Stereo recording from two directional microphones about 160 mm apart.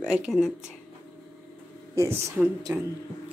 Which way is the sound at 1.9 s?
15° right (ahead or behind).